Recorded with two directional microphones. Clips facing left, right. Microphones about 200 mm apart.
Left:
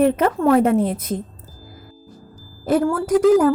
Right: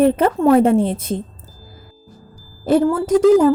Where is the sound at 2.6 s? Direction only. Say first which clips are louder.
Right 3 dB; 25° right (ahead or behind).